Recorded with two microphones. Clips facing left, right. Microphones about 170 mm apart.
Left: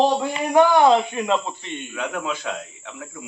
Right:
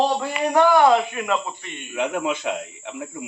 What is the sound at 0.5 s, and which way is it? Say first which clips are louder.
Speech: left 1 dB; 20° left (ahead or behind).